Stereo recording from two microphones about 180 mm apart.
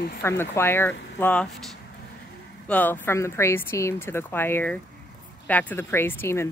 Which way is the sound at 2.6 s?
10° left (ahead or behind).